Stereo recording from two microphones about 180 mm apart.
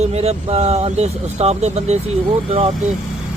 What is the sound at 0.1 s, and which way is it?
Speech, 35° right (ahead or behind).